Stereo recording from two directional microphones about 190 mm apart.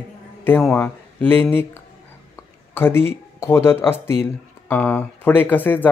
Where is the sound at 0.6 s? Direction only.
5° left (ahead or behind).